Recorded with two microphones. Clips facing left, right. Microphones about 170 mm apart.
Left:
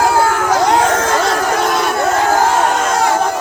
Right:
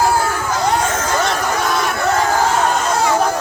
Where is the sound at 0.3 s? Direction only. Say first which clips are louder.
Left 5 dB; 70° left (ahead or behind).